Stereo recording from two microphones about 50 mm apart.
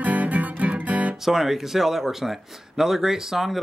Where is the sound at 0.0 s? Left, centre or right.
Right.